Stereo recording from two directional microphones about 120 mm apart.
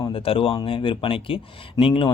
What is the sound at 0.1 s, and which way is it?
Speech, 50° left (ahead or behind).